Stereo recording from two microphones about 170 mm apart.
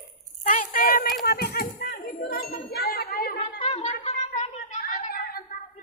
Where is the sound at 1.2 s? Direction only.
65° left (ahead or behind).